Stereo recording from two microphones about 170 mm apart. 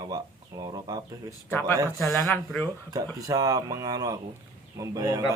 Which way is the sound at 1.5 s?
15° left (ahead or behind).